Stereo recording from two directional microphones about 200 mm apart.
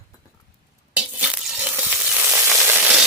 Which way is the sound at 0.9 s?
5° right (ahead or behind).